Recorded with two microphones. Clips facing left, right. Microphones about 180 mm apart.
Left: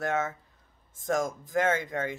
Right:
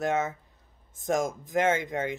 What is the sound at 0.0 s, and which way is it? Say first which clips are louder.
Speech: right 2 dB; 20° right (ahead or behind).